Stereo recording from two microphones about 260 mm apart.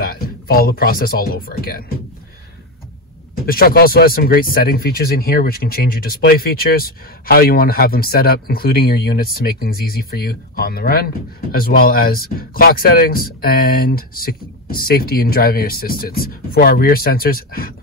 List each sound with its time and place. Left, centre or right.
0.0 s speech: left
3.4 s speech: left